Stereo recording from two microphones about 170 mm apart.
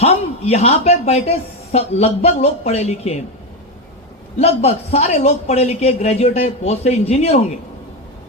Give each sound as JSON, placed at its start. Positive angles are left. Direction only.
{"t": 0.0, "sound": "speech", "side_deg": 35}
{"t": 4.4, "sound": "speech", "side_deg": 35}